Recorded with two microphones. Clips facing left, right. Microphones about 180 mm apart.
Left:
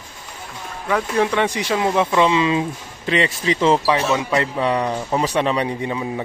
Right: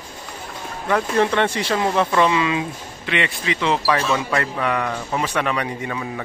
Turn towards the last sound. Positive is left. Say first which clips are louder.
# left 3 dB
turn(degrees=20)  # may be behind; listen again after turning